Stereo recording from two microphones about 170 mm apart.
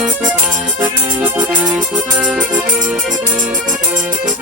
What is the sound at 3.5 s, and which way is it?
Accordion, 50° right (ahead or behind).